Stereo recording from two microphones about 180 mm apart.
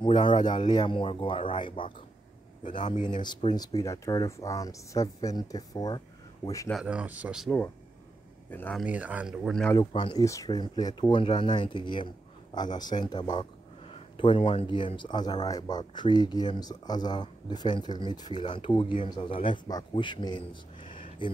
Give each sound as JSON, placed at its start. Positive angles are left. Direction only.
{"t": 0.0, "sound": "speech", "side_deg": 25}
{"t": 6.7, "sound": "speech", "side_deg": -5}
{"t": 8.5, "sound": "speech", "side_deg": 10}
{"t": 8.8, "sound": "speech", "side_deg": -5}
{"t": 9.8, "sound": "speech", "side_deg": 25}